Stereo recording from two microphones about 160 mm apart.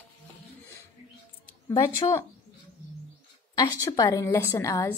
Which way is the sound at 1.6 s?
25° left (ahead or behind).